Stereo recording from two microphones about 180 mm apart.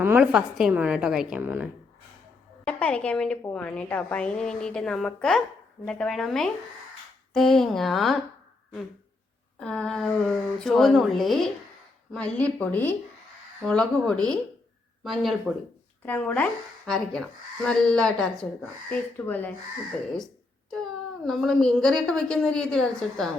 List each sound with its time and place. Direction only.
0.0 s a woman's voice: 10° right (ahead or behind)
2.6 s a woman's voice: 5° left (ahead or behind)
9.6 s a woman's voice: 5° left (ahead or behind)
20.1 s a sound: 5° left (ahead or behind)
21.2 s a woman's voice: 5° left (ahead or behind)